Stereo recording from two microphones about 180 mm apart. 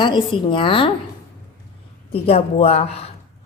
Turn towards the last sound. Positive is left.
turn(degrees=35)  # may be behind; listen again after turning